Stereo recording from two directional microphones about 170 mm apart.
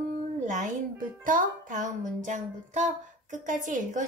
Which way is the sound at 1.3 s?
50° right (ahead or behind).